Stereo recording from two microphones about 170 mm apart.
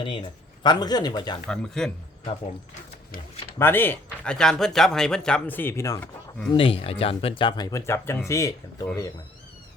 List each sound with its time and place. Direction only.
0.0 s speech: 30° left (ahead or behind)
1.5 s speech: 5° left (ahead or behind)
3.6 s speech: 10° left (ahead or behind)
6.5 s speech: 35° left (ahead or behind); by 8.5 s 15° left (ahead or behind)